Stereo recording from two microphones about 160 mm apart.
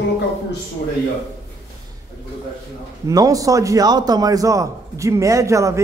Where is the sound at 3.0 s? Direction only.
20° right (ahead or behind).